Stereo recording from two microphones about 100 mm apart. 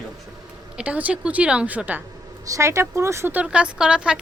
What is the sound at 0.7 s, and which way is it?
Speech, 15° right (ahead or behind).